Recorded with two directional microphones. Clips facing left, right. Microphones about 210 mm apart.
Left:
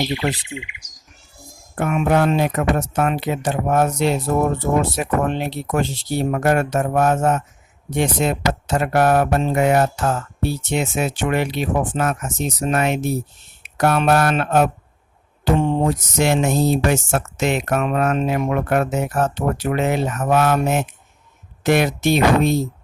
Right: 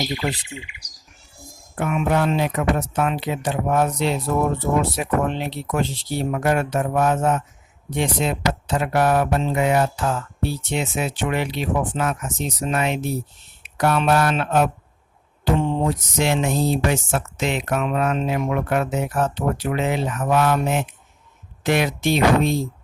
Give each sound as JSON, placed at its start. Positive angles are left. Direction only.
{"t": 0.2, "sound": "speech", "side_deg": 45}
{"t": 0.6, "sound": "speech", "side_deg": -35}
{"t": 1.7, "sound": "speech", "side_deg": 50}